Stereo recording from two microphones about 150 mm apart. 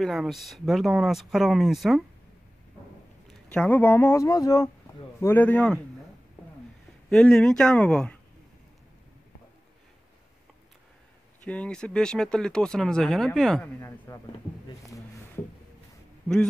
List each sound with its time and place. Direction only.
0.0 s speech: centre (ahead or behind)
3.4 s speech: 10° left (ahead or behind); by 4.6 s 25° left (ahead or behind)
5.2 s speech: 10° left (ahead or behind)
7.1 s speech: 5° left (ahead or behind)
11.4 s speech: 10° left (ahead or behind)
13.7 s speech: 15° left (ahead or behind)